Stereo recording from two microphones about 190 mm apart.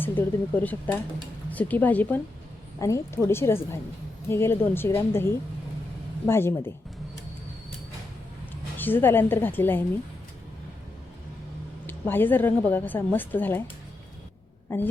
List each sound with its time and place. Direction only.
0.0 s a woman's voice: 10° left (ahead or behind)
8.8 s a woman's voice: 10° left (ahead or behind)
11.9 s a woman's voice: 10° left (ahead or behind)